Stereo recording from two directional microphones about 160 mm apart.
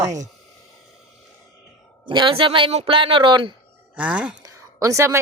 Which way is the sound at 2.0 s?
30° right (ahead or behind).